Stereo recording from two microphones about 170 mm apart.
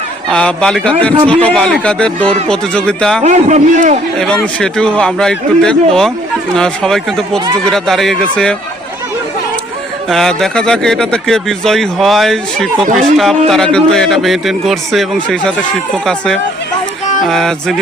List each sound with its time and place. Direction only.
0.3 s speech: 5° left (ahead or behind)
3.2 s a man's voice: 45° right (ahead or behind)
4.6 s speech: 5° left (ahead or behind)
10.1 s speech: centre (ahead or behind)